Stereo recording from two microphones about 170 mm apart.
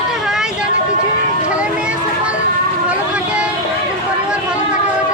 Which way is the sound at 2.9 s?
5° right (ahead or behind).